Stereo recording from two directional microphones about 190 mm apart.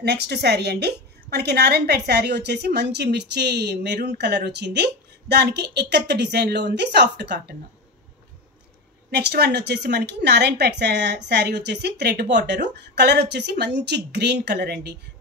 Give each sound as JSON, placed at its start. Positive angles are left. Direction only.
{"t": 0.0, "sound": "a woman's voice", "side_deg": -60}
{"t": 9.1, "sound": "a woman's voice", "side_deg": -60}